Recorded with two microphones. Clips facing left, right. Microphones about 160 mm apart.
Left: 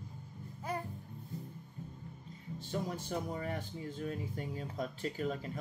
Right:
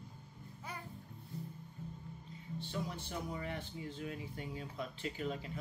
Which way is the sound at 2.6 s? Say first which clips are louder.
Left 5 dB; 45° left (ahead or behind).